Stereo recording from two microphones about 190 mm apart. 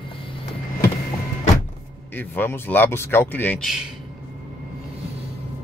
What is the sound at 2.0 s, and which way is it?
Speech, 10° left (ahead or behind).